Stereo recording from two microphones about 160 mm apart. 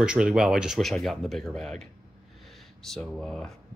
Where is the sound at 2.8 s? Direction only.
Centre (ahead or behind).